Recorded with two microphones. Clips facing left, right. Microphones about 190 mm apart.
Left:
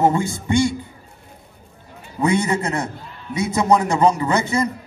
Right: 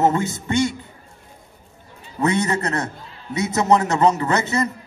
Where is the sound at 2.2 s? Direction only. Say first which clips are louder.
Left 1 dB; 10° left (ahead or behind).